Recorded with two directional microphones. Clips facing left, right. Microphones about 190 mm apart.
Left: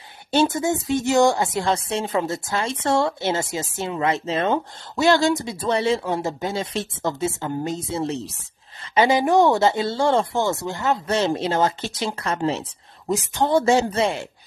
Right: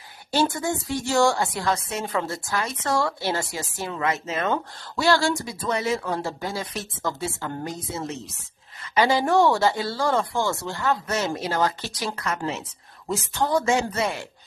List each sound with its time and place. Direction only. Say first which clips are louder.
0.3 s speech: left 4 dB; 20° left (ahead or behind)
13.1 s speech: left 4 dB; 15° left (ahead or behind)